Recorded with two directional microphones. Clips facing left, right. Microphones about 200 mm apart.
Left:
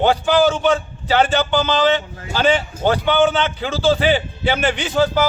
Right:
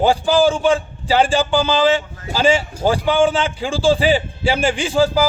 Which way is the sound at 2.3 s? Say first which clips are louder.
Right 1 dB; 10° right (ahead or behind).